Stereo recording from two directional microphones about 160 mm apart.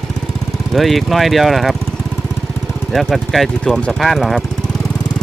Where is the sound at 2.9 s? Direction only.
Centre (ahead or behind).